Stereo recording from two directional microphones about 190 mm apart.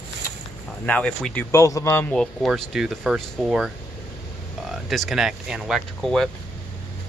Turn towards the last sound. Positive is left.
turn(degrees=0)  # may be behind; listen again after turning